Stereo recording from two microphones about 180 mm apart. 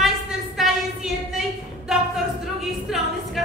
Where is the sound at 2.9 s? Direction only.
5° right (ahead or behind).